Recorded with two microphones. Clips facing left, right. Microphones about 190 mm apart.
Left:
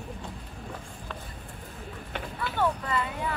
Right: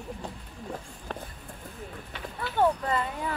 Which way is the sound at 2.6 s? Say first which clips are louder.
Right 3 dB; 35° right (ahead or behind).